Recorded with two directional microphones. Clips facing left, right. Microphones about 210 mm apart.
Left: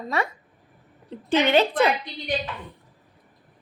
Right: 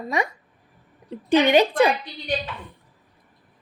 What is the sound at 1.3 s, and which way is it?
Speech, 15° right (ahead or behind).